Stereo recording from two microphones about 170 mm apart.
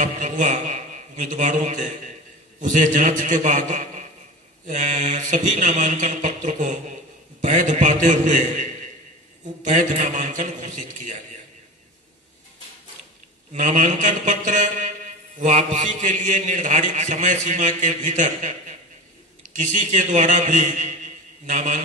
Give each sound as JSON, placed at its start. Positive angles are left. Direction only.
{"t": 0.0, "sound": "a sound", "side_deg": -45}
{"t": 2.6, "sound": "a man's voice", "side_deg": -45}
{"t": 13.5, "sound": "a man's voice", "side_deg": -45}